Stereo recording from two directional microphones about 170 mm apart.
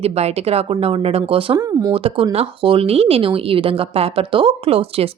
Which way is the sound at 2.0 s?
35° right (ahead or behind).